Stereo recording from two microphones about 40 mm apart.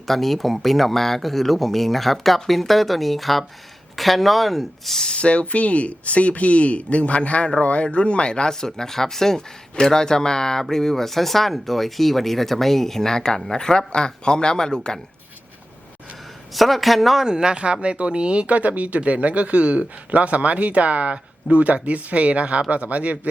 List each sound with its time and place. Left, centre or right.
0.1 s speech: centre
5.1 s speech: left
16.6 s speech: centre
17.2 s speech: right